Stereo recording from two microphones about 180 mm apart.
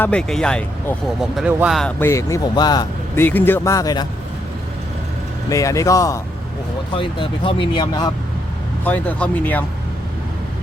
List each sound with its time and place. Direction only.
0.0 s speech: 5° left (ahead or behind)
2.0 s a man's voice: 15° left (ahead or behind)
3.2 s a man's voice: 10° left (ahead or behind)
5.5 s a man's voice: 20° left (ahead or behind)
6.9 s speech: 30° left (ahead or behind)
8.8 s a man's voice: 10° left (ahead or behind)